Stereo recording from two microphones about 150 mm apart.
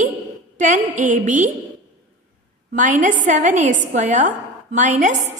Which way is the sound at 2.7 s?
60° right (ahead or behind).